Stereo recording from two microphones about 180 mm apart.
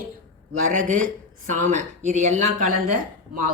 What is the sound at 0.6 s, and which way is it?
Speech, 45° right (ahead or behind).